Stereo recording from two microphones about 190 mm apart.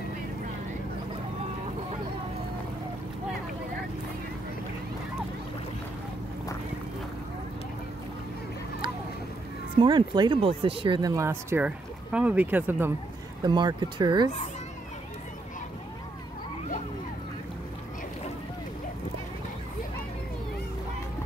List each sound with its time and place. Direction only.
9.8 s speech: 25° right (ahead or behind)
13.4 s speech: 25° right (ahead or behind)